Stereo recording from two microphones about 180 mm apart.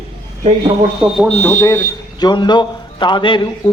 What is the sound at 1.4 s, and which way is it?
Speech, 10° left (ahead or behind).